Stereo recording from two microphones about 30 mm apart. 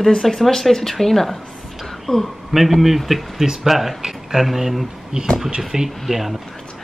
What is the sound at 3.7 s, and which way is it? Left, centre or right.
Speech, centre.